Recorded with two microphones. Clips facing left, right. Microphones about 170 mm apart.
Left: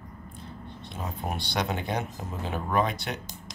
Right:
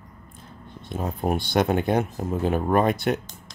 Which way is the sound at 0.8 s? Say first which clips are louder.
Right 8 dB; 50° right (ahead or behind).